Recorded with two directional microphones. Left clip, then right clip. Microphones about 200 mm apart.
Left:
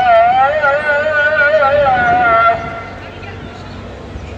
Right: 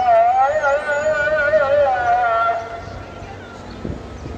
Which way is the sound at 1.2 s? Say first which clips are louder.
Left 7 dB; 10° right (ahead or behind).